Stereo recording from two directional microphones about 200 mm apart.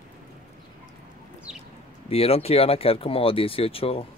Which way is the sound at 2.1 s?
30° left (ahead or behind).